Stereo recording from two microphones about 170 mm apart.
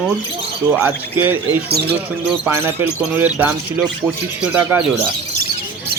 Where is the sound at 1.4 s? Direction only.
70° right (ahead or behind).